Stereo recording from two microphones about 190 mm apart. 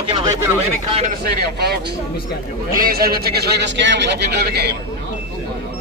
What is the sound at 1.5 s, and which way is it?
A man's voice, 60° right (ahead or behind).